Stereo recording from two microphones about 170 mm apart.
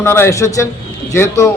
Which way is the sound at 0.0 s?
15° left (ahead or behind).